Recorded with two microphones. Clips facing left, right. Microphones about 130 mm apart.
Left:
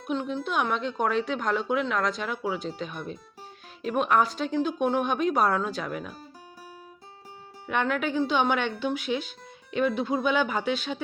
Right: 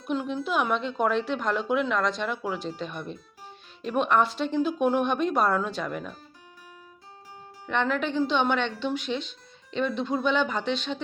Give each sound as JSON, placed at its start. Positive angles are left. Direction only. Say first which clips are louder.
{"t": 0.1, "sound": "a woman's voice", "louder": "right 1 dB", "side_deg": -5}
{"t": 7.7, "sound": "a woman's voice", "louder": "even", "side_deg": 5}